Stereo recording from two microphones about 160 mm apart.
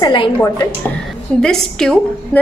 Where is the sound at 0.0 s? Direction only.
30° left (ahead or behind).